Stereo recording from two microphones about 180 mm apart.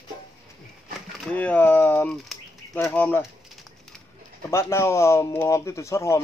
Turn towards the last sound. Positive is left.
turn(degrees=15)  # may be behind; listen again after turning